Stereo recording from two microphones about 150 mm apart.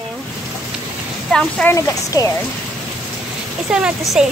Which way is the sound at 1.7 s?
25° left (ahead or behind).